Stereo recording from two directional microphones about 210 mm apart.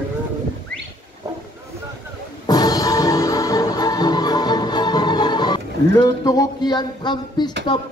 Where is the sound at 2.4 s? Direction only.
20° left (ahead or behind).